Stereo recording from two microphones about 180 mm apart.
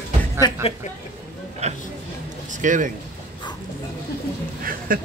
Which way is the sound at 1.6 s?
40° right (ahead or behind).